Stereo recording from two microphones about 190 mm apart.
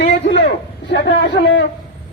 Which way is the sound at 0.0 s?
65° left (ahead or behind).